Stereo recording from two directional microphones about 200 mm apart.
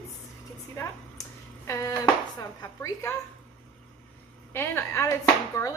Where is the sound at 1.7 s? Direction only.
15° left (ahead or behind).